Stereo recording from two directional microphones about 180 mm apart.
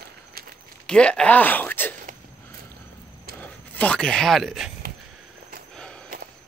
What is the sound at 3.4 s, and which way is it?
Speech, 5° left (ahead or behind).